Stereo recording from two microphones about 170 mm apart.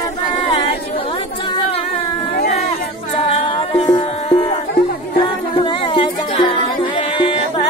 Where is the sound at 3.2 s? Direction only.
35° left (ahead or behind).